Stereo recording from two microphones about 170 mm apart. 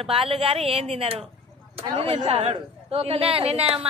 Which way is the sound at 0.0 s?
35° right (ahead or behind).